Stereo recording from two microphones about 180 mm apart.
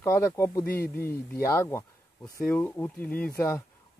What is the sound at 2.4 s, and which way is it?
Speech, 10° left (ahead or behind).